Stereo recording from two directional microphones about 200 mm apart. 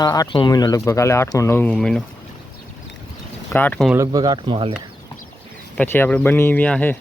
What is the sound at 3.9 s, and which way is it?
Speech, 15° right (ahead or behind).